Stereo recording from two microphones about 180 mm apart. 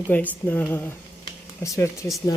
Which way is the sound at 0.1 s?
10° left (ahead or behind).